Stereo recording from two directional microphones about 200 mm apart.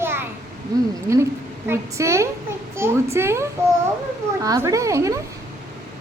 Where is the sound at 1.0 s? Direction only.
15° right (ahead or behind).